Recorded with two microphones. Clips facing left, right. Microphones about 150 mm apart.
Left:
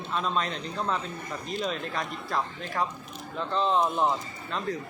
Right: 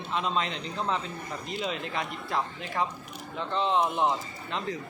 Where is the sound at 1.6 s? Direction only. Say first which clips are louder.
Even; 45° left (ahead or behind).